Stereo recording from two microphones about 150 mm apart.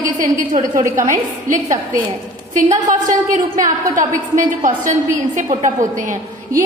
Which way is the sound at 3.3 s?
60° right (ahead or behind).